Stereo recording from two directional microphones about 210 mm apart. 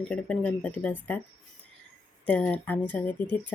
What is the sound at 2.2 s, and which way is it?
Speech, 5° left (ahead or behind).